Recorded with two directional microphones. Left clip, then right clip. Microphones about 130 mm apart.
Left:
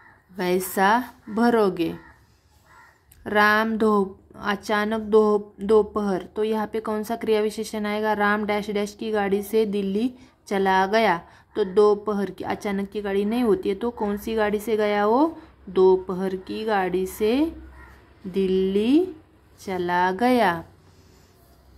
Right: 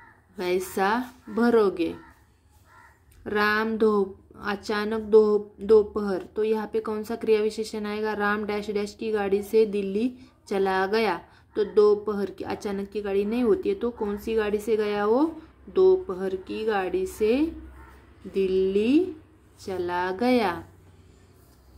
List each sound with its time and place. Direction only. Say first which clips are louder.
0.4 s speech: left 4 dB; 50° left (ahead or behind)
3.3 s speech: left 5 dB; 50° left (ahead or behind)